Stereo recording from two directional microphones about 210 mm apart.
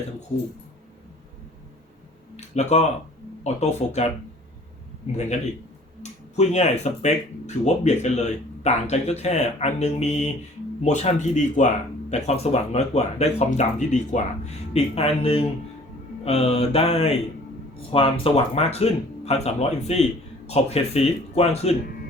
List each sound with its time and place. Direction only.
2.3 s a sound: 30° left (ahead or behind)
3.4 s speech: 30° left (ahead or behind)
6.0 s speech: 35° left (ahead or behind)